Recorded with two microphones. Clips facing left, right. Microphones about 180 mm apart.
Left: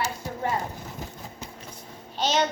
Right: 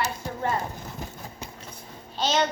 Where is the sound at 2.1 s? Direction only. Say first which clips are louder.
Even; 15° left (ahead or behind).